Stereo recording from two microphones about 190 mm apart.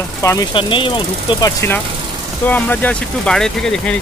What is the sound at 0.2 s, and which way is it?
Speech, 15° left (ahead or behind).